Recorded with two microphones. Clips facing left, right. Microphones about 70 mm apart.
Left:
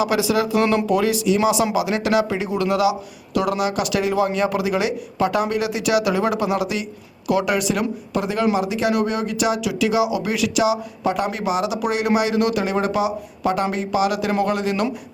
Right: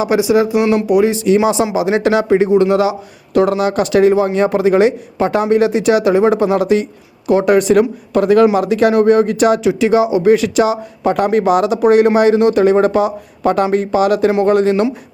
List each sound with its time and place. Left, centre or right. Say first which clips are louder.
0.0 s speech: right 6 dB; right
1.1 s speech: right 5 dB; right
12.4 s speech: right 8 dB; right
12.6 s speech: right 9 dB; right